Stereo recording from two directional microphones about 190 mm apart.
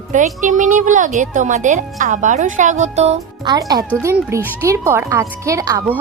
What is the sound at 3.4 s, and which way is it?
A woman's voice, 20° right (ahead or behind).